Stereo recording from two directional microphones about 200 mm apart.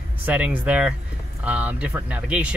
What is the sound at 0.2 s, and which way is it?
Speech, 5° right (ahead or behind).